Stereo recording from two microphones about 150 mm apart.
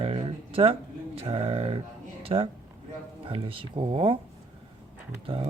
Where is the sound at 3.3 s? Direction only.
35° right (ahead or behind).